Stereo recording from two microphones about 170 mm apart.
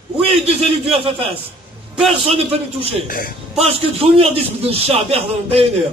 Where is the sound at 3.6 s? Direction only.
35° right (ahead or behind).